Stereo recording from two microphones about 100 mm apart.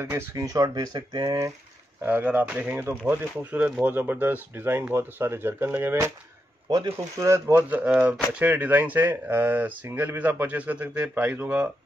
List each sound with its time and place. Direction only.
0.0 s speech: 25° right (ahead or behind); by 1.3 s 45° right (ahead or behind)
2.0 s speech: 20° right (ahead or behind)
6.7 s speech: 40° right (ahead or behind)
7.8 s speech: 10° right (ahead or behind)